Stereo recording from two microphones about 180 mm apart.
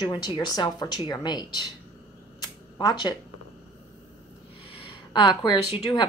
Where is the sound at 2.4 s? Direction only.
20° left (ahead or behind).